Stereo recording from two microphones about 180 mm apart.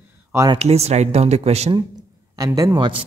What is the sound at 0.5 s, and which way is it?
Speech, 35° right (ahead or behind).